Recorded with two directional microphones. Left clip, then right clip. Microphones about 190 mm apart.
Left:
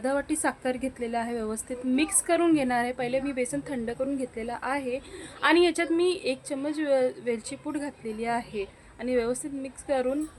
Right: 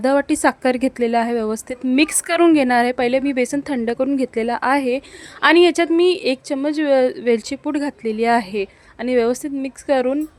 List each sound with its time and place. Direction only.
0.0 s a woman's voice: 40° right (ahead or behind)